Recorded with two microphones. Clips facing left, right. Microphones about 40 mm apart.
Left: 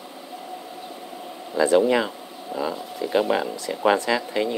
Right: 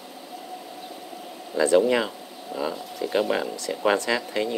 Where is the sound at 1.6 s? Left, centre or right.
Centre.